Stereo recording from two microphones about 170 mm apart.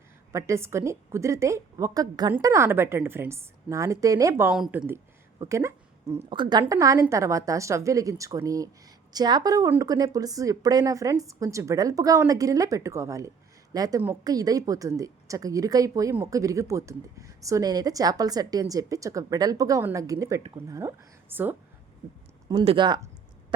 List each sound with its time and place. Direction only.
0.3 s a woman's voice: 15° right (ahead or behind)
4.5 s speech: 5° right (ahead or behind)
5.4 s a woman's voice: 15° right (ahead or behind)
22.4 s a woman's voice: 35° right (ahead or behind)